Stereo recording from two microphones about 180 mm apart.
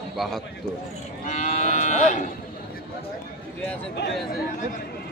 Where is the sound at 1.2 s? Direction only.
45° left (ahead or behind).